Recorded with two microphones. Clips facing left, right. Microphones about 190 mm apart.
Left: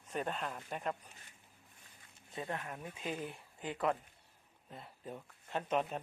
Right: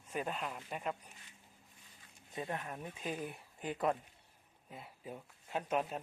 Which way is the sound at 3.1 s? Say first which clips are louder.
Even; 5° right (ahead or behind).